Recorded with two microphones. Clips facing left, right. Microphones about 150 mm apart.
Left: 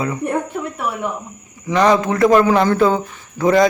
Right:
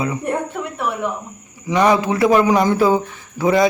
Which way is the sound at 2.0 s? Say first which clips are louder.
Even; 25° right (ahead or behind).